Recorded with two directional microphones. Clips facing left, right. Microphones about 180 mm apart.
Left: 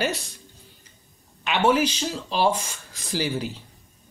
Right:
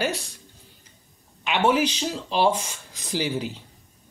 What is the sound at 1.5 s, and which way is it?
Speech, 15° right (ahead or behind).